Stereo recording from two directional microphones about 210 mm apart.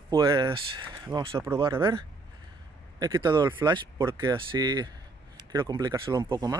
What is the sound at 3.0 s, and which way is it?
Speech, 20° right (ahead or behind).